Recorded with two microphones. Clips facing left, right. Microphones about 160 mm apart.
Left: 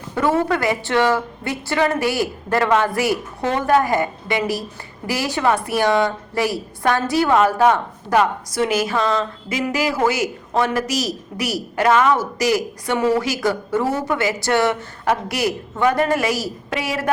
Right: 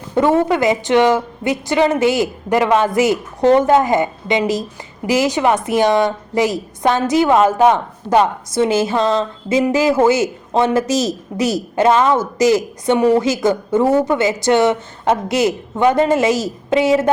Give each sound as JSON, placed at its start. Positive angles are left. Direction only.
{"t": 0.1, "sound": "a woman's voice", "side_deg": -20}